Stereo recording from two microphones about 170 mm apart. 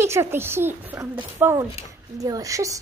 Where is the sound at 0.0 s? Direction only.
15° right (ahead or behind).